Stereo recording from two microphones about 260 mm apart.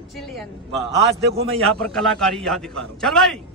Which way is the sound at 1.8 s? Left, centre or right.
Centre.